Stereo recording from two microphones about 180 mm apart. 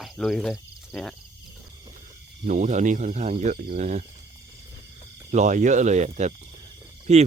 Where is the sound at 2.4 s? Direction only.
45° right (ahead or behind).